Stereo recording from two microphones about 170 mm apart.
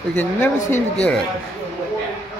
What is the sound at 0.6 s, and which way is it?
Speech, 45° left (ahead or behind).